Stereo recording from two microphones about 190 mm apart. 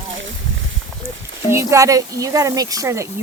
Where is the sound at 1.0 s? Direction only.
30° right (ahead or behind).